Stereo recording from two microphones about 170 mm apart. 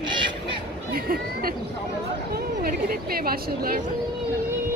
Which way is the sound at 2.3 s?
60° right (ahead or behind).